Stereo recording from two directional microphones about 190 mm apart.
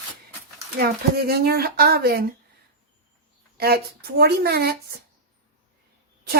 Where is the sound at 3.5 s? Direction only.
55° right (ahead or behind).